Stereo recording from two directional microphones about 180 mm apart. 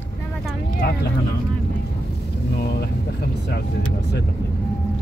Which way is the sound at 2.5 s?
60° left (ahead or behind).